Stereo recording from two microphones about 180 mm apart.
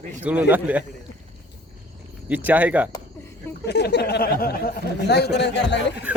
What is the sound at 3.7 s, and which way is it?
Speech, 65° left (ahead or behind).